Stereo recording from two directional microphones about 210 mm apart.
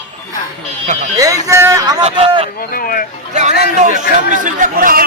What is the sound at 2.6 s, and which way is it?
Speech, 45° left (ahead or behind).